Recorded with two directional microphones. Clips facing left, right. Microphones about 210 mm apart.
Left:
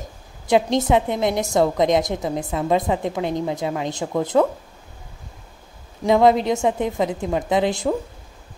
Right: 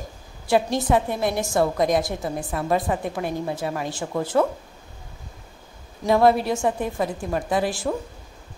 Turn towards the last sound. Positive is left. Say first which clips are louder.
# left 4 dB
turn(degrees=20)  # may be behind; listen again after turning